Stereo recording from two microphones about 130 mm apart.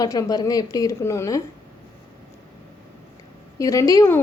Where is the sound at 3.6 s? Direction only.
25° left (ahead or behind).